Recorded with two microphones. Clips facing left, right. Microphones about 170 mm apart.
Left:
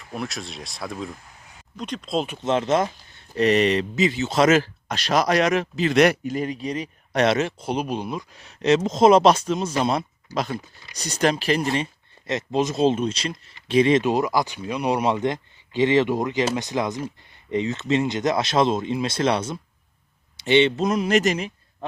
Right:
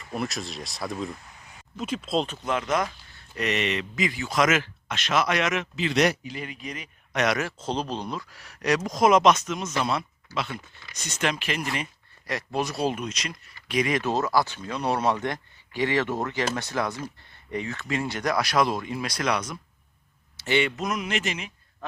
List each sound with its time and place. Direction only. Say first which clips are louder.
0.0 s speech: even; centre (ahead or behind)
2.4 s speech: left 5 dB; 25° left (ahead or behind)
6.0 s speech: left 6 dB; 60° left (ahead or behind)
6.3 s speech: left 10 dB; 40° left (ahead or behind)
7.6 s speech: left 3 dB; 10° left (ahead or behind); by 11.9 s 30° left (ahead or behind)
12.3 s speech: left 5 dB; 20° left (ahead or behind); by 21.5 s 40° left (ahead or behind)